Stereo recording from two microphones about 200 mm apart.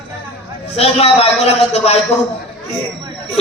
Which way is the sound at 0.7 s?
30° left (ahead or behind).